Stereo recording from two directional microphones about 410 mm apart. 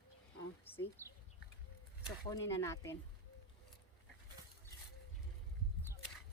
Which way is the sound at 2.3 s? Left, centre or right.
Centre.